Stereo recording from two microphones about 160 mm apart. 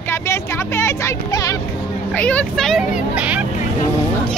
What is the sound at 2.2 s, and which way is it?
Speech, 10° left (ahead or behind).